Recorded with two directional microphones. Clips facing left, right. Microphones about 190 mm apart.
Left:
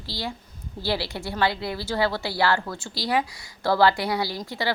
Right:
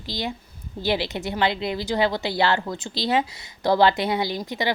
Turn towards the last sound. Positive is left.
turn(degrees=-20)  # may be behind; listen again after turning